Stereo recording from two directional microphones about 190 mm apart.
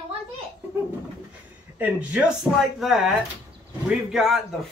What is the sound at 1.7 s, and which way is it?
Speech, 5° right (ahead or behind).